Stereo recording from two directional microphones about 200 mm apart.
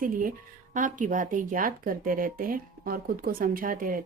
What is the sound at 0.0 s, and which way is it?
Speech, 45° right (ahead or behind).